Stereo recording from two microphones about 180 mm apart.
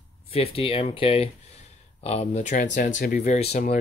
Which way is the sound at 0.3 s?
30° left (ahead or behind).